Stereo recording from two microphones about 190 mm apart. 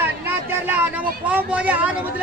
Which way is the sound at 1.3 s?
10° right (ahead or behind).